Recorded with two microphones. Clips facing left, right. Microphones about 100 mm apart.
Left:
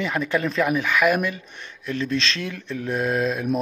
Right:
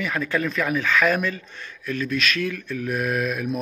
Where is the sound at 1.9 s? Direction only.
25° left (ahead or behind).